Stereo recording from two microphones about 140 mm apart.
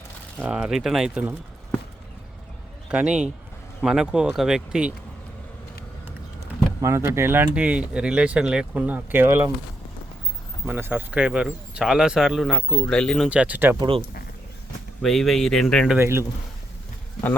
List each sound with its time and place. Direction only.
0.3 s speech: 10° right (ahead or behind)
2.9 s speech: 10° right (ahead or behind)
6.8 s speech: 20° right (ahead or behind)
10.7 s speech: 15° right (ahead or behind)
13.7 s speech: 35° right (ahead or behind)
15.0 s speech: centre (ahead or behind)
16.0 s speech: 20° right (ahead or behind)